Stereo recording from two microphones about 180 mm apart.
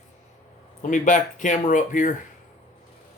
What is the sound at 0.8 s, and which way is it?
Speech, 45° left (ahead or behind).